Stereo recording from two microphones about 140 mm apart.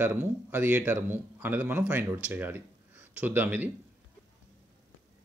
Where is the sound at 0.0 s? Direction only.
15° right (ahead or behind).